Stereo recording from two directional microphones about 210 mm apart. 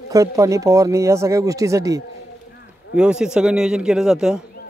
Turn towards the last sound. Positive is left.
turn(degrees=-5)  # may be behind; listen again after turning